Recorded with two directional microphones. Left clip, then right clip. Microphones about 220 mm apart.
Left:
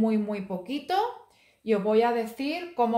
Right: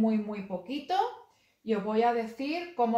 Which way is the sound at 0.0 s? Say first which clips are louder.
Left 3 dB; 50° left (ahead or behind).